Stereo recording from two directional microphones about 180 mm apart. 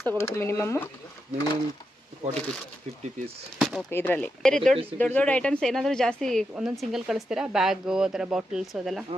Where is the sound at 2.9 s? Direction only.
35° right (ahead or behind).